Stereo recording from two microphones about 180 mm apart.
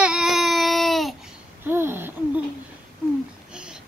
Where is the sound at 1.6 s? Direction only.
10° right (ahead or behind).